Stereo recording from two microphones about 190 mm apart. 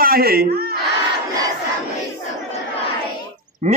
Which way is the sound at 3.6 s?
40° right (ahead or behind).